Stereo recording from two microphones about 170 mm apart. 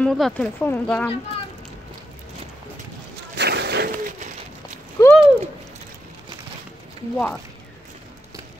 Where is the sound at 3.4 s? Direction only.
80° right.